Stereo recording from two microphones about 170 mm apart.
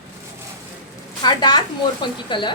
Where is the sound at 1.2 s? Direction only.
25° left (ahead or behind).